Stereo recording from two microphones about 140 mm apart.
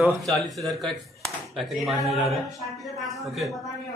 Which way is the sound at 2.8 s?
Centre (ahead or behind).